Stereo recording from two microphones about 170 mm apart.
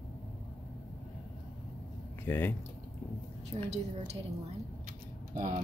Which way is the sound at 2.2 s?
10° left (ahead or behind).